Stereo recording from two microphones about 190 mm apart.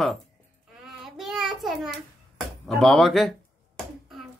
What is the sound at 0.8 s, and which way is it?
Child singing, centre (ahead or behind).